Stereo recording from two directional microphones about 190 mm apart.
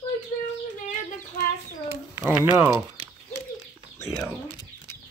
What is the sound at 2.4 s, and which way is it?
Speech, 15° right (ahead or behind).